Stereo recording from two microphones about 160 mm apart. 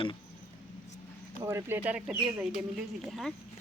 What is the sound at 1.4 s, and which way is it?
Speech, 15° right (ahead or behind).